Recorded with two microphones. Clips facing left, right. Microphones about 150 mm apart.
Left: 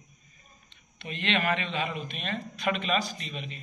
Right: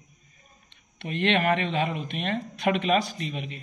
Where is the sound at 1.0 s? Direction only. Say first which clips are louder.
Right 5 dB; 60° right (ahead or behind).